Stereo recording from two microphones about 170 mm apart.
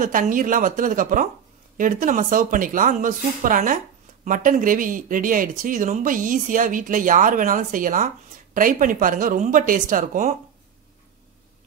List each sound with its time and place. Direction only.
0.0 s speech: 50° right (ahead or behind)